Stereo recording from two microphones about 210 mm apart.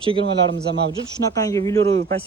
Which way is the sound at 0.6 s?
50° right (ahead or behind).